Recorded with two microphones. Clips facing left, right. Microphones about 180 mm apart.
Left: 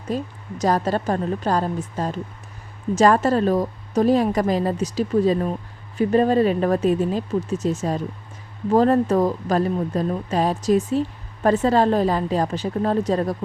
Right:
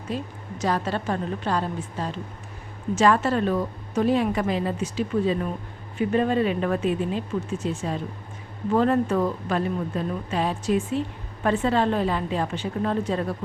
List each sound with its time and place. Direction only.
0.1 s a woman's voice: 45° left (ahead or behind)